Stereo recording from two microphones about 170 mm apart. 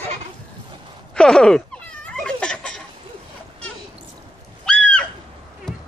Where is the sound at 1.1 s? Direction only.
5° left (ahead or behind).